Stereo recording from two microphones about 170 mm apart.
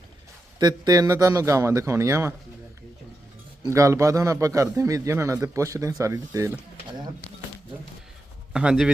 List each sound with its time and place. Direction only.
0.6 s speech: 20° right (ahead or behind)
3.6 s a man's voice: 20° right (ahead or behind)
8.5 s speech: 5° right (ahead or behind)